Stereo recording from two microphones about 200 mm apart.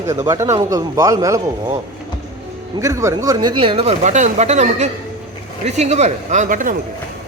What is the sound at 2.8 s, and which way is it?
Speech, 15° right (ahead or behind).